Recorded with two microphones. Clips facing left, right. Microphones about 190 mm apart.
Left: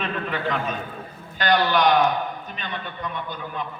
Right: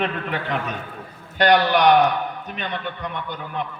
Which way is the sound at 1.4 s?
70° right (ahead or behind).